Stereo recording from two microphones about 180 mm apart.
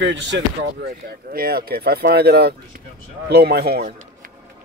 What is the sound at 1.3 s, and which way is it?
Speech, 55° right (ahead or behind).